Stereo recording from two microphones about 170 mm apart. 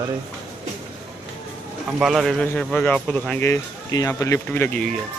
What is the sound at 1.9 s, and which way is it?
A man's voice, centre (ahead or behind).